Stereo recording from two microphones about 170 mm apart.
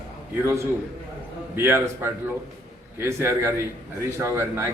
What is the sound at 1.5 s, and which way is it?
A man's voice, 15° right (ahead or behind).